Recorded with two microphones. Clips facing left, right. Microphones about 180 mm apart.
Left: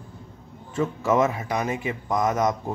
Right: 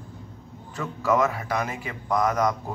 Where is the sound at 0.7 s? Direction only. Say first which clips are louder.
Left 2 dB; 25° left (ahead or behind).